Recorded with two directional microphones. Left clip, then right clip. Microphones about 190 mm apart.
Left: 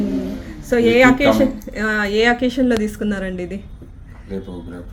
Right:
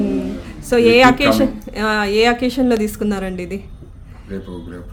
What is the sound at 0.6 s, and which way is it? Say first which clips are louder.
A woman's voice: right 2 dB; 20° right (ahead or behind).